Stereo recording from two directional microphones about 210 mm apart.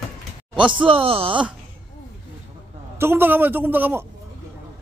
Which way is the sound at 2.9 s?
10° right (ahead or behind).